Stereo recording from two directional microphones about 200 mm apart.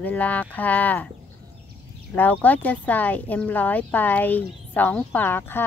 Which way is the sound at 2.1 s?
10° left (ahead or behind).